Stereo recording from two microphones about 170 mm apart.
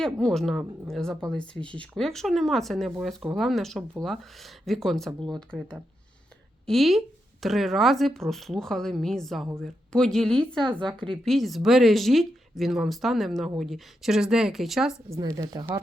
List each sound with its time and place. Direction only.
0.0 s speech: 5° left (ahead or behind)
6.7 s speech: centre (ahead or behind)
10.6 s speech: 30° right (ahead or behind)
11.3 s speech: centre (ahead or behind)
15.4 s speech: 20° right (ahead or behind)